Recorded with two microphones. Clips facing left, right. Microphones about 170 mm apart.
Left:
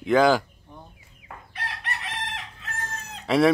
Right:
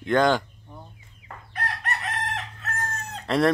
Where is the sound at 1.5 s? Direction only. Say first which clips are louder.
Right 4 dB; 50° right (ahead or behind).